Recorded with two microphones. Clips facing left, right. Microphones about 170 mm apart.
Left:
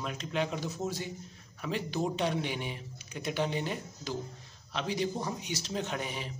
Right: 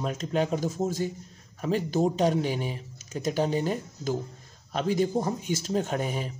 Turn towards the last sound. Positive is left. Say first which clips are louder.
# right 6 dB
turn(degrees=-45)  # may be behind; listen again after turning